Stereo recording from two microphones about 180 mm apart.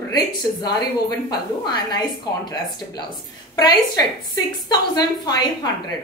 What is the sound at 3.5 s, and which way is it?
A woman's voice, 20° left (ahead or behind).